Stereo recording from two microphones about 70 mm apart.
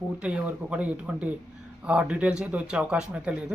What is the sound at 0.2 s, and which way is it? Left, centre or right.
Speech, centre.